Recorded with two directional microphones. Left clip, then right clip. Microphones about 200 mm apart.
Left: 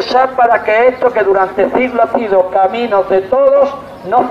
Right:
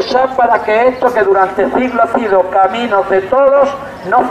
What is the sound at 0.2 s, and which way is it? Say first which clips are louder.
A man's voice: left 2 dB; 25° left (ahead or behind).